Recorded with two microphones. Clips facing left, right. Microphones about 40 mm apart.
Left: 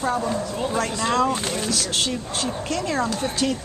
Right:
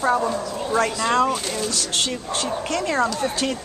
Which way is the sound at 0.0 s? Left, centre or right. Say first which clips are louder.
Right 3 dB; centre.